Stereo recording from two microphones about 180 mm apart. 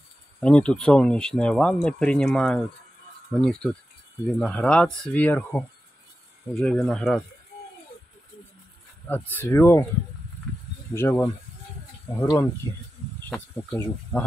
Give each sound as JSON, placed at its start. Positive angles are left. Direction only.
{"t": 0.4, "sound": "speech", "side_deg": 5}
{"t": 9.1, "sound": "speech", "side_deg": 10}
{"t": 10.9, "sound": "speech", "side_deg": 15}
{"t": 13.3, "sound": "speech", "side_deg": 5}